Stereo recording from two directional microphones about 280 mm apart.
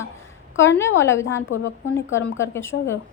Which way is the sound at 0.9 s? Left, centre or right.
Left.